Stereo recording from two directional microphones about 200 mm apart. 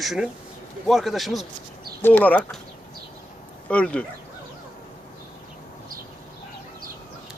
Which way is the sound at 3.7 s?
5° left (ahead or behind).